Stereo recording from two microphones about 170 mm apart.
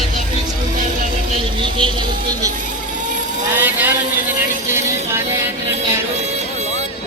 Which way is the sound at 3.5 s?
10° right (ahead or behind).